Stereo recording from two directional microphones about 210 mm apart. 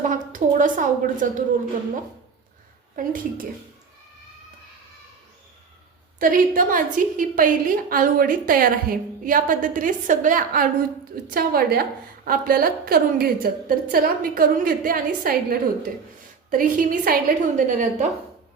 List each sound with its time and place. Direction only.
0.0 s a woman's voice: 40° right (ahead or behind)
2.9 s a woman's voice: 40° right (ahead or behind)
6.1 s a woman's voice: 40° right (ahead or behind)